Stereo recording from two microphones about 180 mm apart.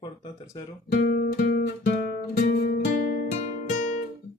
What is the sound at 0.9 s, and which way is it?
Guitar, 60° left (ahead or behind).